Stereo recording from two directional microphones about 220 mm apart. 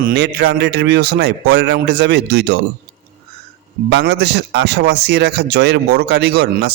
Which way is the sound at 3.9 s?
50° right (ahead or behind).